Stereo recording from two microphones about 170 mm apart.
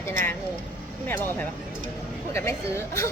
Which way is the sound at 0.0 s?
15° left (ahead or behind).